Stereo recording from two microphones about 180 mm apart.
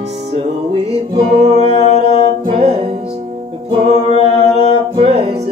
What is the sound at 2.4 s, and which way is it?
Music, 35° right (ahead or behind).